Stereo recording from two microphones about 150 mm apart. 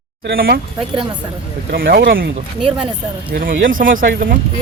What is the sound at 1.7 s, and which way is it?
Speech, 80° right.